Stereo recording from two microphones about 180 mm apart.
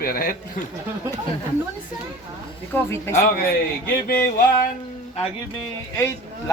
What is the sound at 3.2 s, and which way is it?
A man's voice, 55° left (ahead or behind).